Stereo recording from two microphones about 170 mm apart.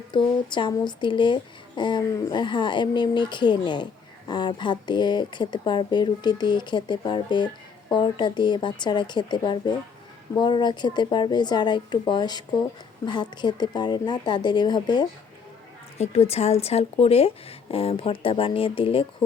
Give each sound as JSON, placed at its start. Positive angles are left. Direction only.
{"t": 0.1, "sound": "speech", "side_deg": 25}
{"t": 16.0, "sound": "speech", "side_deg": 40}